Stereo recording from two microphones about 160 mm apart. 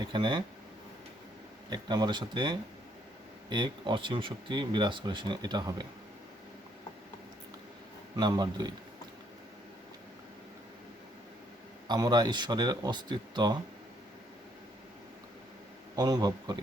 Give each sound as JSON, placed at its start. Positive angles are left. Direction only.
{"t": 0.0, "sound": "speech", "side_deg": -30}
{"t": 1.7, "sound": "speech", "side_deg": -25}
{"t": 8.1, "sound": "speech", "side_deg": -25}
{"t": 11.9, "sound": "speech", "side_deg": -25}
{"t": 16.0, "sound": "speech", "side_deg": -25}